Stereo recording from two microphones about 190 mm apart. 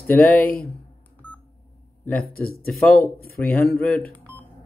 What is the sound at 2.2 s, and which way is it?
Speech, 50° left (ahead or behind).